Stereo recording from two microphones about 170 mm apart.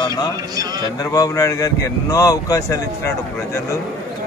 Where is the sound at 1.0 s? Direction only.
20° left (ahead or behind).